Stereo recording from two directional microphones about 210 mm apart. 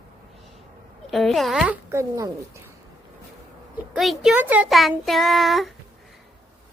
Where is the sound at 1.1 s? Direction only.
Centre (ahead or behind); by 2.3 s 15° right (ahead or behind).